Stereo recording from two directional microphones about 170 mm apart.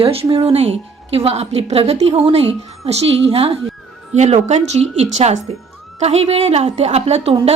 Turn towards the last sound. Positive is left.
turn(degrees=-40)  # may be behind; listen again after turning